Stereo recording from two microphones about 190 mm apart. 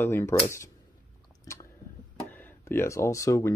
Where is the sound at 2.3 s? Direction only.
10° left (ahead or behind).